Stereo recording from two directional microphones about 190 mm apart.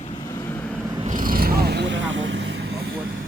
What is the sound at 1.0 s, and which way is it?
Vehicle, 45° right (ahead or behind).